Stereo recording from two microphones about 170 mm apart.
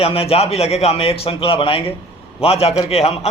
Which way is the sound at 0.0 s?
35° left (ahead or behind).